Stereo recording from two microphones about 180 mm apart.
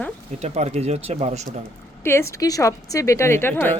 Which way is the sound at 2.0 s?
15° left (ahead or behind).